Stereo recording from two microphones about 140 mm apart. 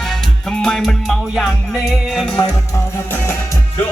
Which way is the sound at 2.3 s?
15° left (ahead or behind).